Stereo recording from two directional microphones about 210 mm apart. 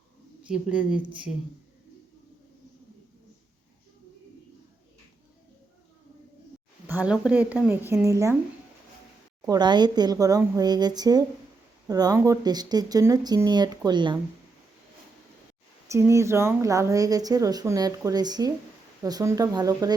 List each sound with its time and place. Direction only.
0.4 s speech: 5° right (ahead or behind)
6.8 s speech: 5° right (ahead or behind)
9.5 s speech: 20° right (ahead or behind)
15.9 s speech: 15° right (ahead or behind)